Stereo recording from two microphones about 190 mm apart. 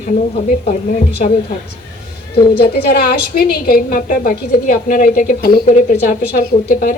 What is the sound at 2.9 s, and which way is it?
A woman's voice, 55° left (ahead or behind).